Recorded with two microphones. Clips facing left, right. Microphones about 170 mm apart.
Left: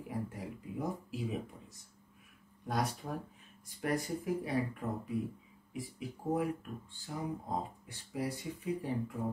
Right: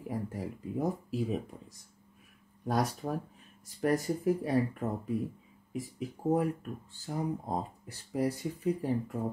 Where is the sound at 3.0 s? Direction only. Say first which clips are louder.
Right 6 dB; 40° right (ahead or behind).